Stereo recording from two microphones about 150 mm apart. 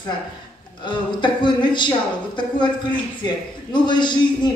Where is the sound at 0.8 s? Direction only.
30° left (ahead or behind).